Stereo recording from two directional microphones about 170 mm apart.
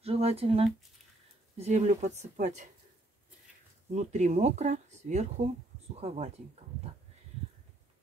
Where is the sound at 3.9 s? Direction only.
45° right (ahead or behind).